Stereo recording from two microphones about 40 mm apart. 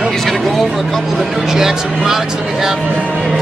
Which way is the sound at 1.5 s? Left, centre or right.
Centre.